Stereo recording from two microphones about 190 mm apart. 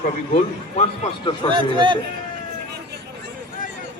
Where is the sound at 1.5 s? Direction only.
25° right (ahead or behind).